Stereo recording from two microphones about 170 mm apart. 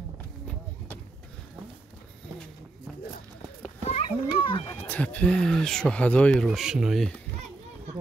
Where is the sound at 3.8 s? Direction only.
35° left (ahead or behind).